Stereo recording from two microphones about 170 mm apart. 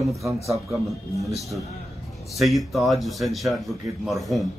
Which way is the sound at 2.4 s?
Centre (ahead or behind).